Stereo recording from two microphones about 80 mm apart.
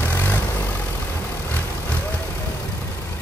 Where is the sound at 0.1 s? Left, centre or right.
Left.